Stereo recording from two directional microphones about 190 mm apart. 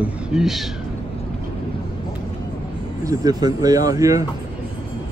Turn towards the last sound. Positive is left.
turn(degrees=-15)  # may be behind; listen again after turning